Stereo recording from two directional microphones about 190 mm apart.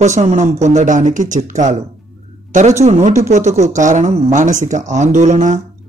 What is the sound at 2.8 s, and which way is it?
Speech, 35° right (ahead or behind).